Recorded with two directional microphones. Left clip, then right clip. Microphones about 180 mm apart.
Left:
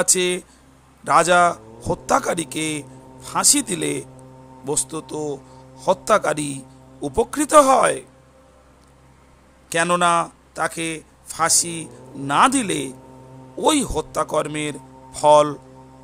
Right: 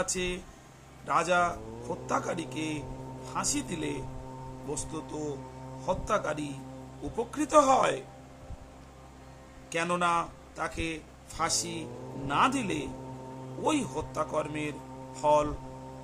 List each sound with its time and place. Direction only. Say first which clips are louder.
0.0 s a man's voice: left 12 dB; 55° left (ahead or behind); by 8.0 s 35° left (ahead or behind)
9.6 s a man's voice: left 11 dB; 50° left (ahead or behind)